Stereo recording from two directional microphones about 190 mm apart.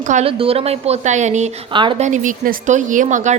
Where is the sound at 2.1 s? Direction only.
40° right (ahead or behind).